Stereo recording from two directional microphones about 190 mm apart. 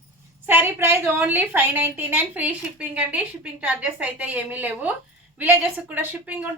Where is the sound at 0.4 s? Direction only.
10° right (ahead or behind).